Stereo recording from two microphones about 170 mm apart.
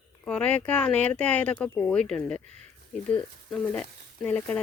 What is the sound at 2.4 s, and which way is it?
Speech, 40° right (ahead or behind).